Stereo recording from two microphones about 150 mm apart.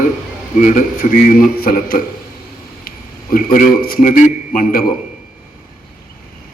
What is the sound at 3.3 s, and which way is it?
A man's voice, 70° left (ahead or behind).